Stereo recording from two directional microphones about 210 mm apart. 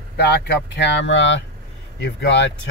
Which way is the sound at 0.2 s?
50° left (ahead or behind).